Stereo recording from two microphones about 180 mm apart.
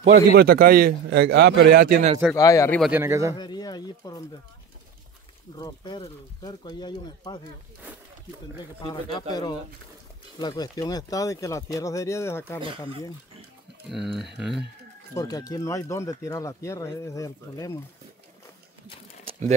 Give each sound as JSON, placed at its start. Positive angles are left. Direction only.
{"t": 0.0, "sound": "a man's voice", "side_deg": -60}
{"t": 2.3, "sound": "speech", "side_deg": 20}
{"t": 2.9, "sound": "speech", "side_deg": -15}
{"t": 3.3, "sound": "speech", "side_deg": 25}
{"t": 5.6, "sound": "speech", "side_deg": 25}
{"t": 9.3, "sound": "speech", "side_deg": 20}
{"t": 13.8, "sound": "speech", "side_deg": 0}
{"t": 15.1, "sound": "speech", "side_deg": 20}